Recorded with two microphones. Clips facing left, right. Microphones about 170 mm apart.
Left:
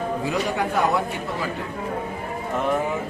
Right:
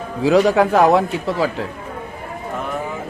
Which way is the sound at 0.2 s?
90° right.